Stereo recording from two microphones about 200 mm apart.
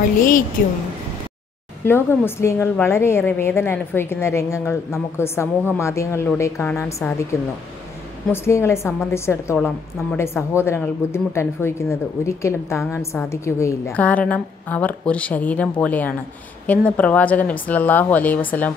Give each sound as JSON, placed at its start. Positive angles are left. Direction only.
{"t": 0.2, "sound": "a woman's voice", "side_deg": 40}
{"t": 1.9, "sound": "a woman's voice", "side_deg": 10}
{"t": 8.3, "sound": "a woman's voice", "side_deg": 15}